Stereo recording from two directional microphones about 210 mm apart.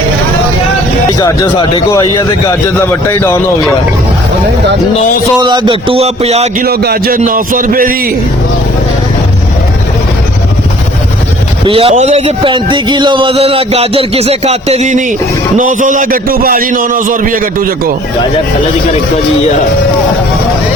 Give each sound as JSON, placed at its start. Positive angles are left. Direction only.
{"t": 1.2, "sound": "a man's voice", "side_deg": 20}
{"t": 5.4, "sound": "a man's voice", "side_deg": -20}
{"t": 6.6, "sound": "a man's voice", "side_deg": -50}
{"t": 11.6, "sound": "a man's voice", "side_deg": -25}